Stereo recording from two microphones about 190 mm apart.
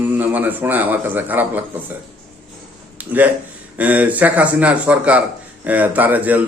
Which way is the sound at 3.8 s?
10° right (ahead or behind).